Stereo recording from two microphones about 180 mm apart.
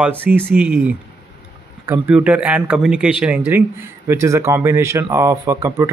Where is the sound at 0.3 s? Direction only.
5° right (ahead or behind).